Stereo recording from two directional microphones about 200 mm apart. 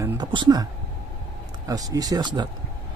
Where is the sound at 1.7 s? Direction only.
20° right (ahead or behind).